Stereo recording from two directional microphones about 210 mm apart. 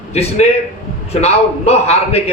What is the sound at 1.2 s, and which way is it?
A man's voice, 30° left (ahead or behind).